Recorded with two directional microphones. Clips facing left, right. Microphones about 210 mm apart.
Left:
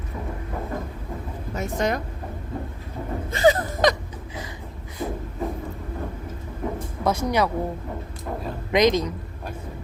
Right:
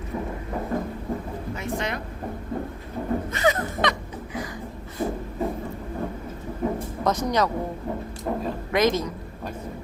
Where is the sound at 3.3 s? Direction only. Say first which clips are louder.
Left 9 dB; 30° left (ahead or behind).